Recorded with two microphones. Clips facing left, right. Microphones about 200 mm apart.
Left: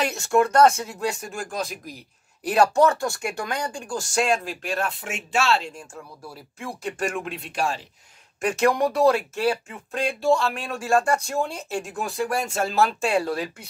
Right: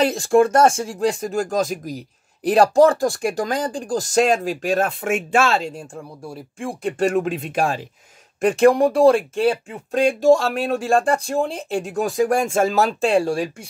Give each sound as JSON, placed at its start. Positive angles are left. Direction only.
{"t": 0.0, "sound": "speech", "side_deg": -35}
{"t": 5.9, "sound": "speech", "side_deg": -30}
{"t": 8.4, "sound": "speech", "side_deg": -30}
{"t": 12.0, "sound": "speech", "side_deg": -45}